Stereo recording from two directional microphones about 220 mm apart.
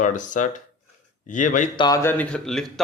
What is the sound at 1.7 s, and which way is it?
Speech, 15° left (ahead or behind).